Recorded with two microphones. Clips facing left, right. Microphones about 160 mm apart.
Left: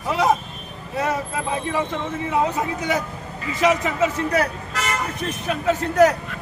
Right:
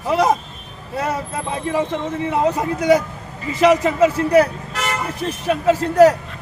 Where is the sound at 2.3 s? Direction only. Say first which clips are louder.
Right 2 dB; 40° right (ahead or behind).